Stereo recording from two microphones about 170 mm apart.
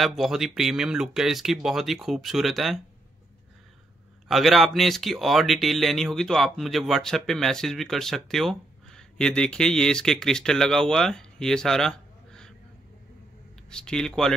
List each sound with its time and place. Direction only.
0.0 s speech: centre (ahead or behind)
4.3 s speech: centre (ahead or behind)
13.7 s speech: 5° left (ahead or behind)